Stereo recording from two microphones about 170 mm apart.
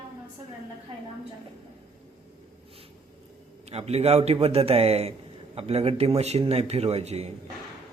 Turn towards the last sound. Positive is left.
turn(degrees=-40)  # may be behind; listen again after turning